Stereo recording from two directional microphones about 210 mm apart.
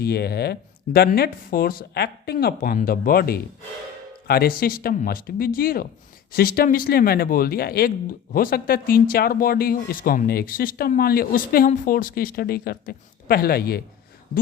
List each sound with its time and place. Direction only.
0.0 s speech: 50° left (ahead or behind)